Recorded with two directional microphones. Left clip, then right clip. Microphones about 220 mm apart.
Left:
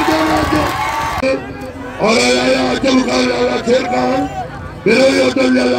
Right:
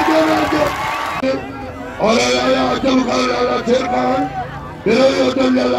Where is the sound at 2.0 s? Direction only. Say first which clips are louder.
Left 2 dB; 20° left (ahead or behind).